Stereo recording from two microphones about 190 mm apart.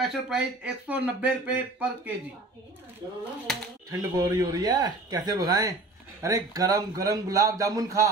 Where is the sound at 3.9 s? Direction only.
20° right (ahead or behind).